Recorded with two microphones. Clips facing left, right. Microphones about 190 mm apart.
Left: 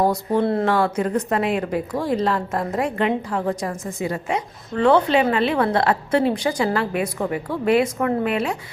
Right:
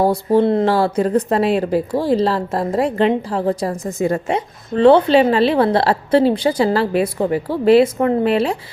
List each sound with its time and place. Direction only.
0.0 s a woman's voice: 30° right (ahead or behind)
4.3 s a woman's voice: 30° right (ahead or behind)